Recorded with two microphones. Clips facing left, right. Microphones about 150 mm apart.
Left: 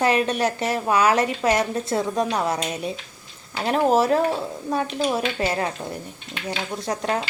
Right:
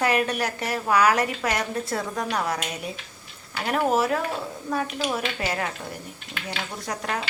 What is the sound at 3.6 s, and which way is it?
Speech, 30° left (ahead or behind).